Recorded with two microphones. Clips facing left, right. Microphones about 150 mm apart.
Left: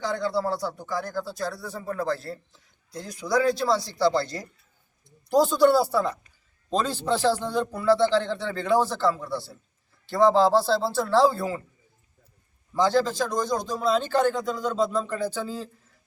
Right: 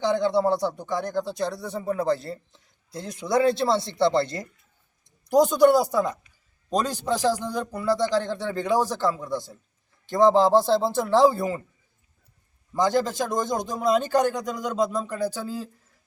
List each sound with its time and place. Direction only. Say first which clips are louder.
0.0 s speech: right 5 dB; 25° right (ahead or behind)
2.1 s speech: right 2 dB; centre (ahead or behind)
3.6 s speech: right 1 dB; 25° right (ahead or behind)
4.2 s speech: right 4 dB; centre (ahead or behind)
5.3 s a man's voice: right 2 dB; 20° right (ahead or behind)
12.7 s a man's voice: even; 15° right (ahead or behind)